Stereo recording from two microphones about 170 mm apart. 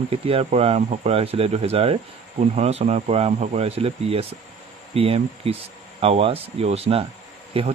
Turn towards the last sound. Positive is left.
turn(degrees=-35)  # may be behind; listen again after turning